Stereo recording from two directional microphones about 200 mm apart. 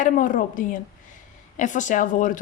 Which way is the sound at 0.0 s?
40° left (ahead or behind).